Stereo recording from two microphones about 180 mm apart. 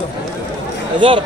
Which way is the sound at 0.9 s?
25° right (ahead or behind).